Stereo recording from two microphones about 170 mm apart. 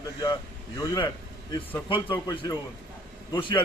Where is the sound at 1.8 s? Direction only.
30° left (ahead or behind).